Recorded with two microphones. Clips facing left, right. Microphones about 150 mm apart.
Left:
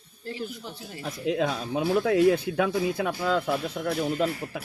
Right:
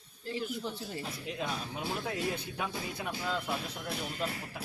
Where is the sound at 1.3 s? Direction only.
90° left.